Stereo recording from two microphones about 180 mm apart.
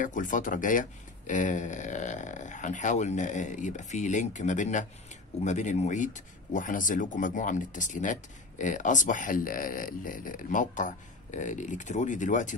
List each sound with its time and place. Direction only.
0.0 s speech: 45° left (ahead or behind)